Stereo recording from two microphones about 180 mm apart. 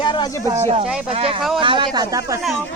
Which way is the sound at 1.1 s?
30° right (ahead or behind).